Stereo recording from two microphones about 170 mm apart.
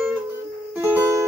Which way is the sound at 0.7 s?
10° right (ahead or behind).